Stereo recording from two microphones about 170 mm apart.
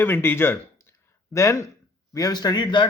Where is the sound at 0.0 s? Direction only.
15° left (ahead or behind).